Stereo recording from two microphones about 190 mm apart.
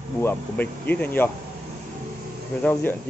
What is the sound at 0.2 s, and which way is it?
Speech, 10° left (ahead or behind).